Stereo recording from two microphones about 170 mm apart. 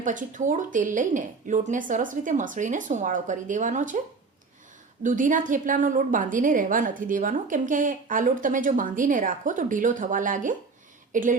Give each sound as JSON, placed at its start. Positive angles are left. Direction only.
{"t": 0.0, "sound": "a woman's voice", "side_deg": -50}
{"t": 5.0, "sound": "a woman's voice", "side_deg": -50}